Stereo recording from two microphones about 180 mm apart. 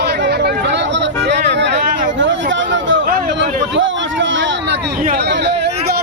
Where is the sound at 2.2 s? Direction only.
90° right.